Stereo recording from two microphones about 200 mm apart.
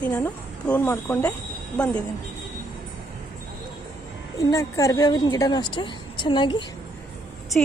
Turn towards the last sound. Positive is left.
turn(degrees=5)  # may be behind; listen again after turning